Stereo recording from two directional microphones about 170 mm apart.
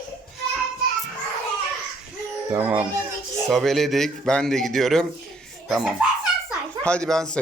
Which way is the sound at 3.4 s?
Centre (ahead or behind).